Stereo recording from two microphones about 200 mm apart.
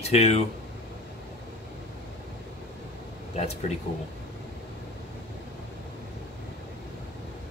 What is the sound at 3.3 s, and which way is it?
Speech, 30° left (ahead or behind).